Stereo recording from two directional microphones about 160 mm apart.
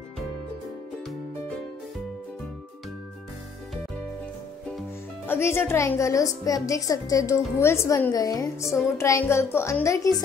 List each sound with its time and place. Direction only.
5.2 s a woman's voice: 15° left (ahead or behind)